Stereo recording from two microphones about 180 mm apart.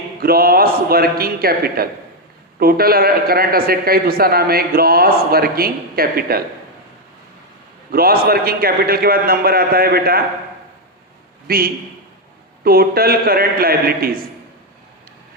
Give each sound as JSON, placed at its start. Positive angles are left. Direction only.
{"t": 0.2, "sound": "a man's voice", "side_deg": -55}
{"t": 7.9, "sound": "a man's voice", "side_deg": -55}
{"t": 11.4, "sound": "a man's voice", "side_deg": -55}